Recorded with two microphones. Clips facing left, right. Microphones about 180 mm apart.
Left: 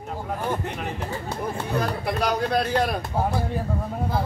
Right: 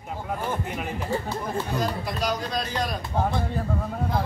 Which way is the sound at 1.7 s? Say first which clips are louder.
Left 2 dB; 60° left (ahead or behind).